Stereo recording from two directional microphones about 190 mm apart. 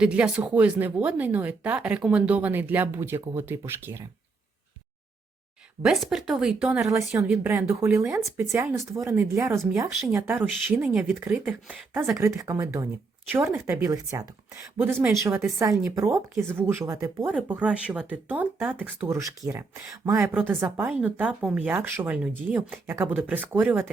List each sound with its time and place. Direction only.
0.0 s speech: 5° right (ahead or behind)
5.8 s speech: centre (ahead or behind)